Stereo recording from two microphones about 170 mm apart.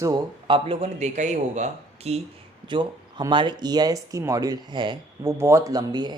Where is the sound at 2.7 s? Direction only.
30° right (ahead or behind).